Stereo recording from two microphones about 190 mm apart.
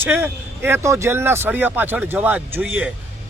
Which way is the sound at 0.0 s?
10° right (ahead or behind).